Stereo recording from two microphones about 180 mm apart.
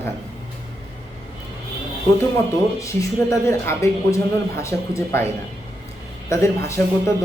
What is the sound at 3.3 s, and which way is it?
Speech, 15° left (ahead or behind).